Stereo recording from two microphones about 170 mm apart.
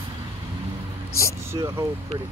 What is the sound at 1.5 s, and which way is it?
Speech, 20° right (ahead or behind).